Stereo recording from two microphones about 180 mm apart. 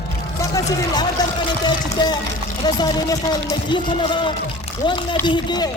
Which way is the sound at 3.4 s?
25° left (ahead or behind).